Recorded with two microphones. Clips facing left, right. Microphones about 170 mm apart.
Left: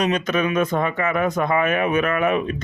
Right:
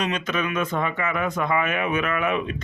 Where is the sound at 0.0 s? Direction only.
40° left (ahead or behind).